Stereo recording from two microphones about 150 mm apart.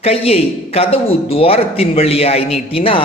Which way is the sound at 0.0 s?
40° left (ahead or behind).